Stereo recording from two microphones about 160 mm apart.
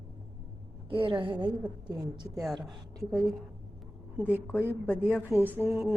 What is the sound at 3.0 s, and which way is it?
Speech, 5° left (ahead or behind).